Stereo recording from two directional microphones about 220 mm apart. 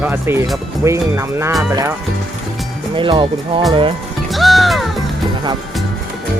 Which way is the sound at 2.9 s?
25° right (ahead or behind).